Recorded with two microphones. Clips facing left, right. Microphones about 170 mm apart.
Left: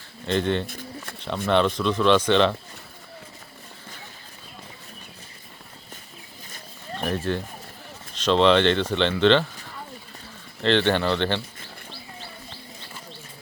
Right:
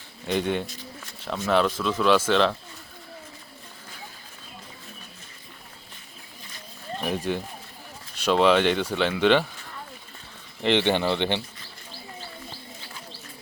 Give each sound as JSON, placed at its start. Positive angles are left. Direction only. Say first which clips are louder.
{"t": 0.3, "sound": "speech", "louder": "left 2 dB", "side_deg": -10}
{"t": 7.0, "sound": "speech", "louder": "left 1 dB", "side_deg": -10}
{"t": 10.6, "sound": "speech", "louder": "left 1 dB", "side_deg": -15}